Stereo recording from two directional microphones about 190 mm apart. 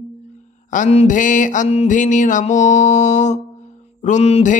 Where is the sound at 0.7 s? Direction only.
35° left (ahead or behind).